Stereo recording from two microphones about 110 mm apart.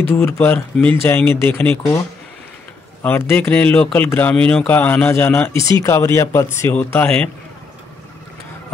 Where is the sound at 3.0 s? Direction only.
20° left (ahead or behind).